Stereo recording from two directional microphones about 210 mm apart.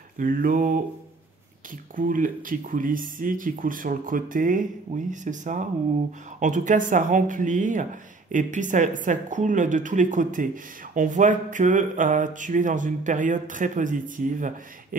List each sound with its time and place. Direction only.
0.2 s a woman's voice: 40° right (ahead or behind)
2.0 s a woman's voice: 40° right (ahead or behind)